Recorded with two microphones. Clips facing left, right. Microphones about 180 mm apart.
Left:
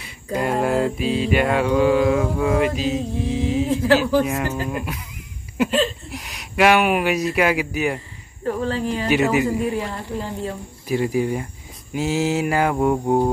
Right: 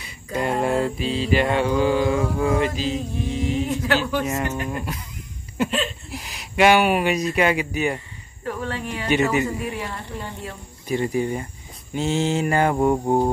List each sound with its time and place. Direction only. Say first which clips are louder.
0.4 s mantra: left 1 dB; centre (ahead or behind)
3.3 s speech: left 3 dB; 5° left (ahead or behind)
3.6 s speech: left 5 dB; 30° left (ahead or behind)
4.2 s mantra: left 3 dB; centre (ahead or behind)
6.0 s speech: left 1 dB; centre (ahead or behind)
8.5 s speech: left 6 dB; 30° left (ahead or behind)
9.1 s mantra: left 1 dB; 5° left (ahead or behind)
9.7 s speech: left 5 dB; 30° left (ahead or behind)
10.9 s mantra: left 2 dB; 5° left (ahead or behind)
12.7 s cricket: left 1 dB; 10° right (ahead or behind)